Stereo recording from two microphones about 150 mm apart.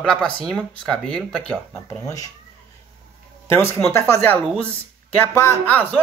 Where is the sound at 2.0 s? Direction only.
25° left (ahead or behind).